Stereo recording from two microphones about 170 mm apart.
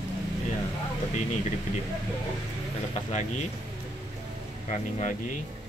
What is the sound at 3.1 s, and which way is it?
Speech, 45° left (ahead or behind).